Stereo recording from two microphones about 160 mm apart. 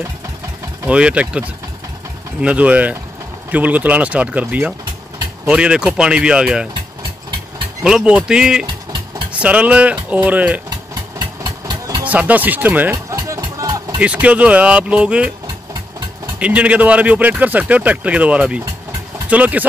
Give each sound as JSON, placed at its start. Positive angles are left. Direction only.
{"t": 0.8, "sound": "speech", "side_deg": -5}
{"t": 2.4, "sound": "speech", "side_deg": -10}
{"t": 6.7, "sound": "engine", "side_deg": -30}
{"t": 7.8, "sound": "speech", "side_deg": -5}
{"t": 11.1, "sound": "engine", "side_deg": -25}
{"t": 12.0, "sound": "speech", "side_deg": -10}
{"t": 13.1, "sound": "music", "side_deg": -20}
{"t": 13.9, "sound": "speech", "side_deg": -10}
{"t": 16.3, "sound": "speech", "side_deg": -10}